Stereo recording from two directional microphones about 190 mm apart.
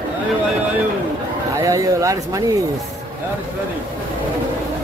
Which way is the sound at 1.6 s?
15° right (ahead or behind).